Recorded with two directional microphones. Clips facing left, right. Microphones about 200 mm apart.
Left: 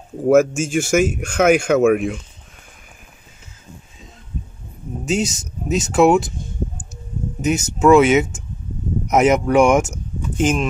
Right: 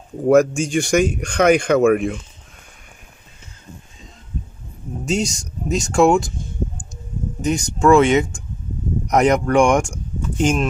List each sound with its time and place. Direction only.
0.2 s speech: 5° left (ahead or behind)
5.0 s speech: 5° left (ahead or behind)
7.4 s speech: 5° left (ahead or behind)